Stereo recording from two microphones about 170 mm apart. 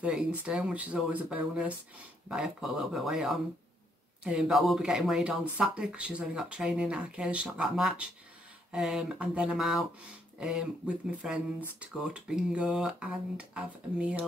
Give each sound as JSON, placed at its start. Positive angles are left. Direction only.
{"t": 0.0, "sound": "speech", "side_deg": -5}